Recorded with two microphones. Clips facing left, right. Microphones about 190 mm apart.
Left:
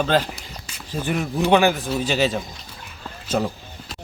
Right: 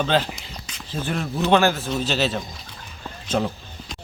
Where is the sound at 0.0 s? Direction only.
10° left (ahead or behind).